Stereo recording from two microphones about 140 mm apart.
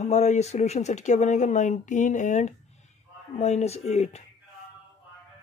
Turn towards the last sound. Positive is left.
turn(degrees=50)  # may be behind; listen again after turning